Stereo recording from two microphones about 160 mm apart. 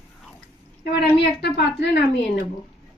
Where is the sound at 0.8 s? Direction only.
90° left.